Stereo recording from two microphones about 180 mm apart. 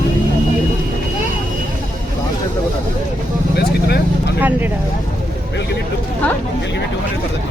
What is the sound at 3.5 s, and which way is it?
Vehicle, 60° left (ahead or behind).